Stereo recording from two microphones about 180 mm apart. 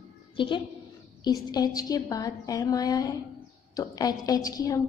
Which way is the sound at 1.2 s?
20° left (ahead or behind).